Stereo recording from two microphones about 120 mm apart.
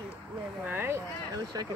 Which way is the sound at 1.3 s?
30° right (ahead or behind).